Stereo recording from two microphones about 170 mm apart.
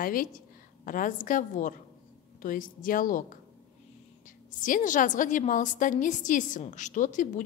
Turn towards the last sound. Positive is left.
turn(degrees=50)  # may be behind; listen again after turning